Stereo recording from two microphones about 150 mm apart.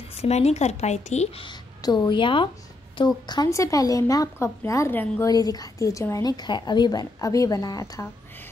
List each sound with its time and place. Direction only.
0.1 s a woman's voice: 45° left (ahead or behind); by 8.1 s 25° left (ahead or behind)